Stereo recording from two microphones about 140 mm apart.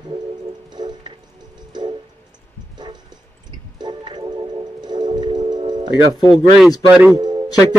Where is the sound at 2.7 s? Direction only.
30° right (ahead or behind).